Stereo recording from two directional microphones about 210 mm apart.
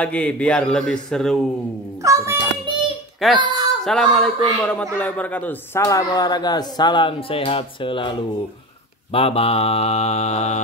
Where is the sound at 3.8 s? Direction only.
Centre (ahead or behind).